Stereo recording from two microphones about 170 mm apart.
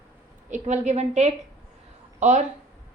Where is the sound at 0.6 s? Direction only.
40° right (ahead or behind).